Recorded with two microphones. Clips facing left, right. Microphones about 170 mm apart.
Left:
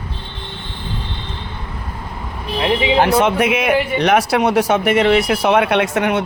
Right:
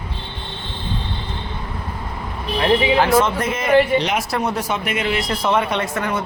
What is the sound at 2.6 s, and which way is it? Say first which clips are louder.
Speech: even; 20° left (ahead or behind).